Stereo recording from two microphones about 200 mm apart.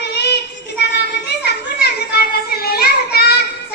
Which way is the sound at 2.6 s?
50° left (ahead or behind).